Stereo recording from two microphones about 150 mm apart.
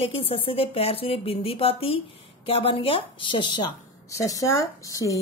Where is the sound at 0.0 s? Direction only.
40° left (ahead or behind).